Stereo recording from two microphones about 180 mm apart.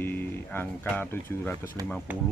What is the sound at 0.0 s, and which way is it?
Speech, 10° left (ahead or behind).